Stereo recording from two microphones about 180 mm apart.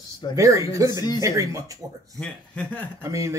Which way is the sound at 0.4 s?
15° right (ahead or behind).